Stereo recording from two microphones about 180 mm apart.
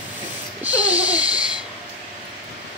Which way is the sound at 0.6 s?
10° right (ahead or behind).